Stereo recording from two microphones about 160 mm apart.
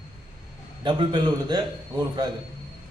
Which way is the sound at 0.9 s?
30° right (ahead or behind).